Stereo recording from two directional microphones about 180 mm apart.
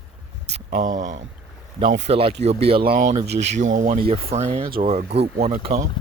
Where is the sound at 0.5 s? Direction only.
40° right (ahead or behind).